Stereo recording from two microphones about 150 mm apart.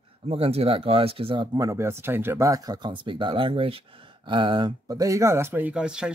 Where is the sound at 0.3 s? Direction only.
40° right (ahead or behind).